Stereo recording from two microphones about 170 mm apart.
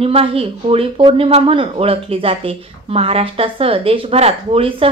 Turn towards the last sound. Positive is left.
turn(degrees=-35)  # may be behind; listen again after turning